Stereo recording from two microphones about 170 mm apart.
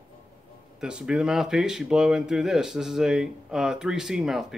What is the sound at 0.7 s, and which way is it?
Speech, 5° right (ahead or behind).